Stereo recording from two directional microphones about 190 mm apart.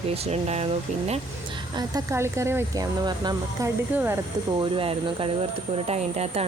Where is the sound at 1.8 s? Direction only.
15° right (ahead or behind).